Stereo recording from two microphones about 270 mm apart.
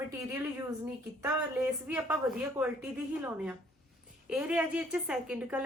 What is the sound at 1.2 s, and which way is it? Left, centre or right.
A woman's voice, centre.